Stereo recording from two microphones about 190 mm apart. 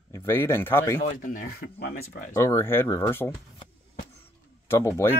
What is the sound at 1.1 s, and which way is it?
Speech, 45° left (ahead or behind).